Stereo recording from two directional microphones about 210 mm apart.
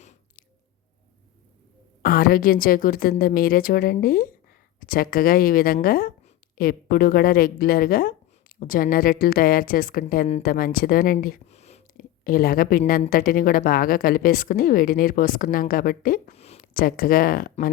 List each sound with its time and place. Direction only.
0.0 s chewing: 35° left (ahead or behind)
2.0 s a woman's voice: 45° left (ahead or behind)
16.7 s a woman's voice: 45° left (ahead or behind)